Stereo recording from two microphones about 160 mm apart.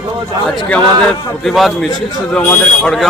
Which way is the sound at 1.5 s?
Centre (ahead or behind).